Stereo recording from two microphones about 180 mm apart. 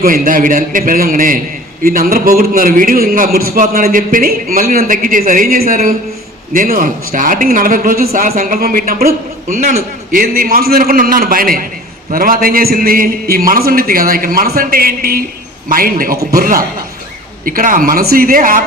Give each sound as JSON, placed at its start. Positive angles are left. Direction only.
{"t": 0.0, "sound": "a man's voice", "side_deg": -50}
{"t": 9.5, "sound": "a man's voice", "side_deg": -40}